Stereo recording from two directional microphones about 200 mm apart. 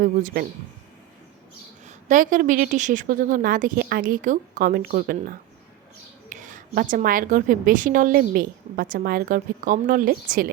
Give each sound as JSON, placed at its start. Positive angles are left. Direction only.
{"t": 0.0, "sound": "a woman's voice", "side_deg": -45}
{"t": 1.9, "sound": "a woman's voice", "side_deg": -40}